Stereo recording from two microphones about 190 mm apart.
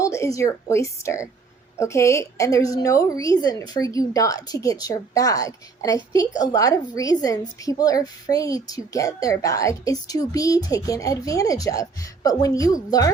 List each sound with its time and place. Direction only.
0.0 s a woman's voice: 15° left (ahead or behind)